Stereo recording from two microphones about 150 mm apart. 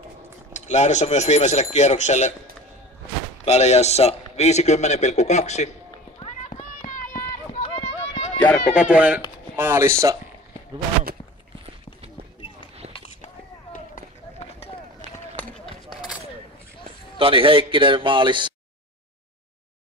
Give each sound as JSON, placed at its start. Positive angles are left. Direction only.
{"t": 0.5, "sound": "a man's voice", "side_deg": 50}
{"t": 3.4, "sound": "a man's voice", "side_deg": 45}
{"t": 6.8, "sound": "run", "side_deg": 70}
{"t": 7.6, "sound": "run", "side_deg": 40}
{"t": 8.7, "sound": "speech", "side_deg": -10}
{"t": 13.9, "sound": "run", "side_deg": 45}
{"t": 17.2, "sound": "a man's voice", "side_deg": -35}